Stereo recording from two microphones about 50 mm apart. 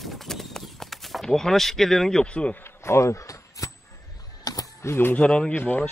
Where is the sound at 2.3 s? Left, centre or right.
Left.